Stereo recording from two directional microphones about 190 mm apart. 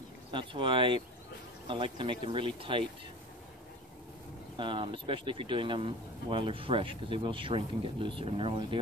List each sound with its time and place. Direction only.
0.3 s speech: 25° right (ahead or behind)
4.6 s speech: 25° right (ahead or behind)